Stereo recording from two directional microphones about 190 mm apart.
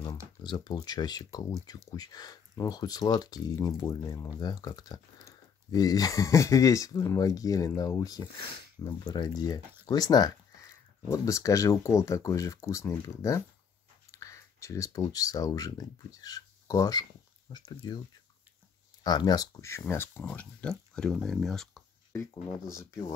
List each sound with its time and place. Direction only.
0.4 s speech: 20° left (ahead or behind)
19.0 s speech: 20° left (ahead or behind); by 21.8 s centre (ahead or behind)
22.8 s speech: 20° left (ahead or behind)